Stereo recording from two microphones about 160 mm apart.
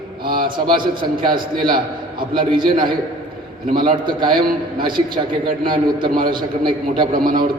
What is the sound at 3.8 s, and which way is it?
A man's voice, 30° right (ahead or behind).